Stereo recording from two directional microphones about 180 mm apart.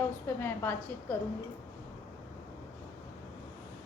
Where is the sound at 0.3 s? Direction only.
10° left (ahead or behind).